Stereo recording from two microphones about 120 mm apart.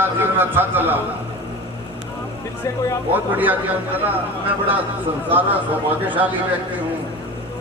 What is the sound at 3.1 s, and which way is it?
Speech, 15° right (ahead or behind).